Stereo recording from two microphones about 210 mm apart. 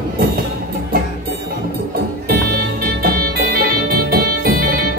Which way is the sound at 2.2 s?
45° right (ahead or behind).